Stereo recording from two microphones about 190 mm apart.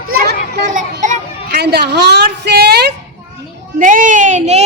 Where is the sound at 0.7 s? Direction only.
40° right (ahead or behind).